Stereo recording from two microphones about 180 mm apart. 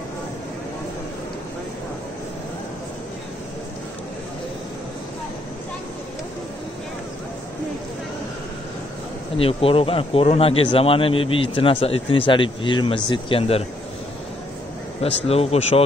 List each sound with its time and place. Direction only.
9.4 s speech: 30° left (ahead or behind)
15.0 s speech: 35° left (ahead or behind)